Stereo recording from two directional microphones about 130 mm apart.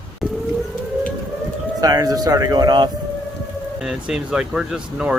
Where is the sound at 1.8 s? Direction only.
30° right (ahead or behind).